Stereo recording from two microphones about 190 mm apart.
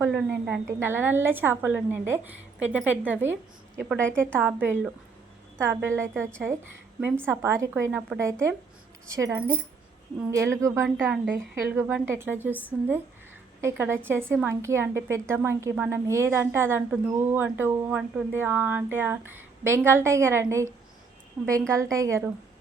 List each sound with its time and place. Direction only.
0.0 s a woman's voice: 10° right (ahead or behind)
21.7 s a woman's voice: 15° right (ahead or behind)